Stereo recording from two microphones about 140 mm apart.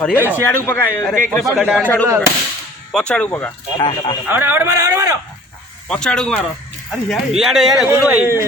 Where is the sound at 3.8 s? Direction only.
35° left (ahead or behind).